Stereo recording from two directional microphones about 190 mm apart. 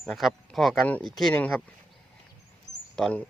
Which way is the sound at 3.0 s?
5° left (ahead or behind).